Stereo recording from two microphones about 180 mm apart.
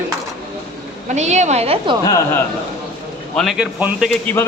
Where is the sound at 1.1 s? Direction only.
40° right (ahead or behind).